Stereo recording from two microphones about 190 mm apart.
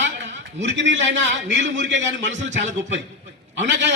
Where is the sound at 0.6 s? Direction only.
70° right (ahead or behind).